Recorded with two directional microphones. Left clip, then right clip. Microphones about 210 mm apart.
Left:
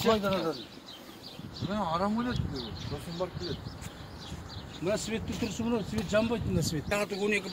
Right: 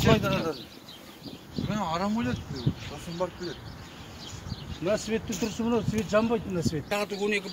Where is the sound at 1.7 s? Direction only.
20° right (ahead or behind).